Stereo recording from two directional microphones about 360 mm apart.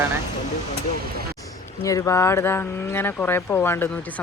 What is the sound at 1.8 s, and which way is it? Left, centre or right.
Speech, centre.